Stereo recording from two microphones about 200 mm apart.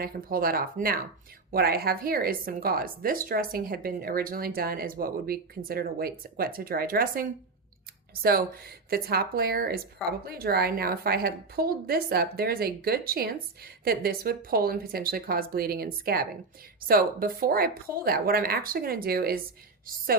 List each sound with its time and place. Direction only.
0.0 s speech: 45° right (ahead or behind)